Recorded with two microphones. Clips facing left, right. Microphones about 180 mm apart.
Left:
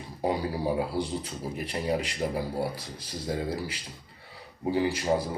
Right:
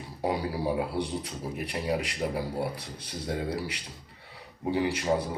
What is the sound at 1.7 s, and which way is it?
Speech, centre (ahead or behind).